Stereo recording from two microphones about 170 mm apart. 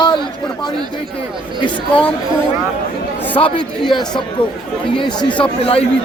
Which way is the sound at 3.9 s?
25° left (ahead or behind).